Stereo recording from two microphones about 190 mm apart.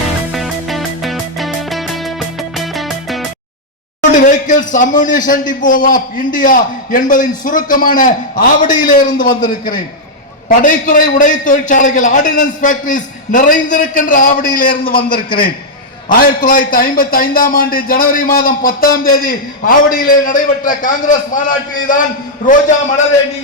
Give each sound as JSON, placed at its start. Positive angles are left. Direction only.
{"t": 0.3, "sound": "music", "side_deg": 0}
{"t": 4.1, "sound": "a man's voice", "side_deg": 40}